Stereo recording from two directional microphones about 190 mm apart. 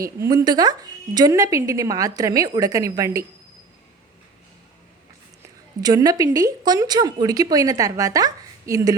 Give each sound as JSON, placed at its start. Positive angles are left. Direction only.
{"t": 0.0, "sound": "a woman's voice", "side_deg": -15}
{"t": 5.8, "sound": "speech", "side_deg": -20}